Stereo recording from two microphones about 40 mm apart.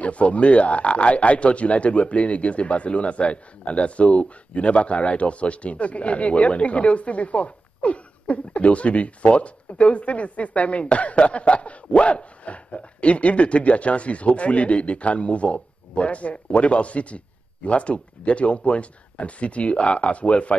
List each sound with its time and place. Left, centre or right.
0.0 s speech: left